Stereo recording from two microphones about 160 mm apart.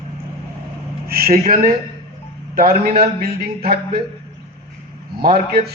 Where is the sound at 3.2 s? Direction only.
75° right (ahead or behind).